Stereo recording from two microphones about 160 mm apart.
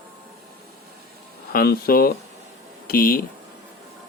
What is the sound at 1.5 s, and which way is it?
Speech, 70° left (ahead or behind).